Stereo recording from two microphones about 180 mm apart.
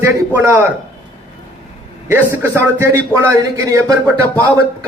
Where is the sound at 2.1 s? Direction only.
15° right (ahead or behind).